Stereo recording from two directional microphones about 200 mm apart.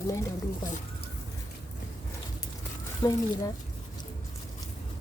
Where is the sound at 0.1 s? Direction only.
15° left (ahead or behind).